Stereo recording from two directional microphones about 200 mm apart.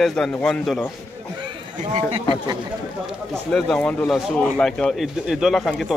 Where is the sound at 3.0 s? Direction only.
5° left (ahead or behind).